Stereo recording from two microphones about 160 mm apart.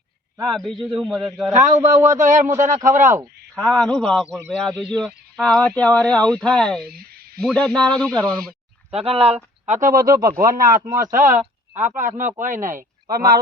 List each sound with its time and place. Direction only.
0.4 s speech: centre (ahead or behind)
2.1 s a man's voice: 55° right (ahead or behind)
3.5 s speech: 5° left (ahead or behind)
6.8 s a sound: 70° right (ahead or behind)
7.4 s speech: 5° left (ahead or behind)
8.9 s speech: 40° right (ahead or behind)
10.1 s a man's voice: 65° right (ahead or behind)